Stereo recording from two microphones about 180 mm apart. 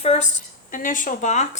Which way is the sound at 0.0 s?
35° left (ahead or behind).